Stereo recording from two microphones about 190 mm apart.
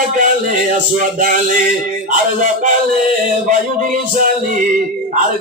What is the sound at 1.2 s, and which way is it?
Speech, 45° right (ahead or behind).